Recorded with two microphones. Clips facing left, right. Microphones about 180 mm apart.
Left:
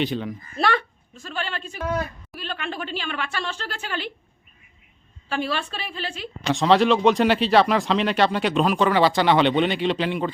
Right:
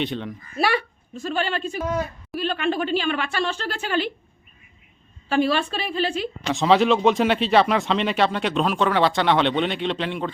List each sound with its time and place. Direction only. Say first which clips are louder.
0.0 s speech: left 2 dB; centre (ahead or behind)
0.6 s a woman's voice: right 1 dB; 10° right (ahead or behind)
5.3 s a woman's voice: right 6 dB; 15° right (ahead or behind)
6.5 s speech: even; centre (ahead or behind)